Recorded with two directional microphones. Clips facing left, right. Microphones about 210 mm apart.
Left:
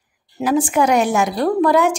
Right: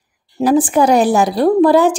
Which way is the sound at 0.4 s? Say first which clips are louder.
Right 4 dB; 35° right (ahead or behind).